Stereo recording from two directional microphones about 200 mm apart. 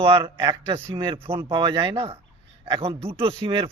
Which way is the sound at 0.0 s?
25° right (ahead or behind).